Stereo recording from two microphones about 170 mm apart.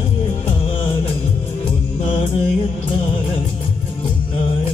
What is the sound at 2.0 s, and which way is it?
Music, 35° left (ahead or behind).